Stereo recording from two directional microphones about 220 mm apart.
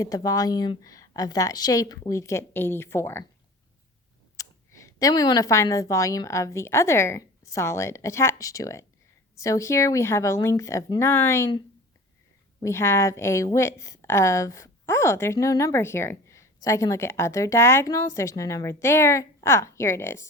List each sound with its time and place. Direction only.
0.0 s a woman's voice: 15° left (ahead or behind)
4.4 s a woman's voice: 15° left (ahead or behind)
12.6 s a woman's voice: 10° left (ahead or behind)